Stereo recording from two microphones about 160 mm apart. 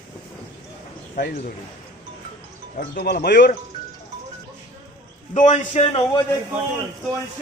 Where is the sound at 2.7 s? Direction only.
65° left (ahead or behind); by 3.5 s 85° left.